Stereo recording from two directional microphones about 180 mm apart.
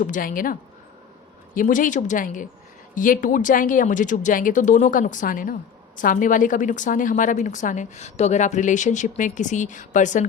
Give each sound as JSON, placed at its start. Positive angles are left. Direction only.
{"t": 0.0, "sound": "a woman's voice", "side_deg": 50}
{"t": 1.5, "sound": "a woman's voice", "side_deg": 45}